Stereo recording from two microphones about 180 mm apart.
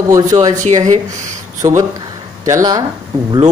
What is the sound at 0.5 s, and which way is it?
Speech, 40° right (ahead or behind).